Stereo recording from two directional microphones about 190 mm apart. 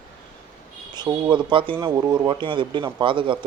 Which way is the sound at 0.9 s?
20° right (ahead or behind).